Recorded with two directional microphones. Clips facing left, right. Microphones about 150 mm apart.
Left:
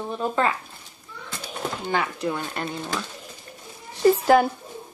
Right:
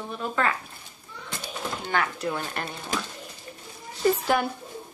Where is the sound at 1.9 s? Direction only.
15° left (ahead or behind).